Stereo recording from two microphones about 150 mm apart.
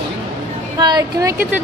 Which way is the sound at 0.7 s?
25° right (ahead or behind).